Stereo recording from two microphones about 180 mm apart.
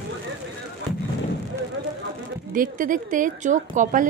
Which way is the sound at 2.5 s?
50° right (ahead or behind).